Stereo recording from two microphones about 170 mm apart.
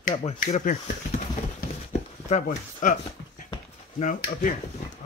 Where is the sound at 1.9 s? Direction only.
40° left (ahead or behind).